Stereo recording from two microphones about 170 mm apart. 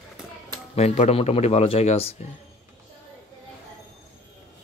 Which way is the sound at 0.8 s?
40° left (ahead or behind).